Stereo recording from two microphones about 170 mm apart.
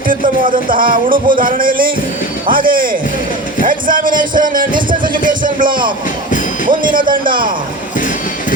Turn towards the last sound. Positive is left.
turn(degrees=-55)  # may be behind; listen again after turning